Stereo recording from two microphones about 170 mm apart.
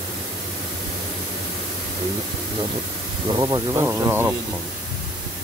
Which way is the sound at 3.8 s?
15° right (ahead or behind).